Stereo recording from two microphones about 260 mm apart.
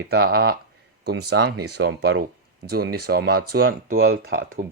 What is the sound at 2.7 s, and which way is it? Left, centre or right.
Speech, right.